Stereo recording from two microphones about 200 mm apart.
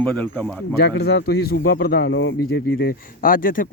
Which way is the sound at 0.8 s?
55° left (ahead or behind).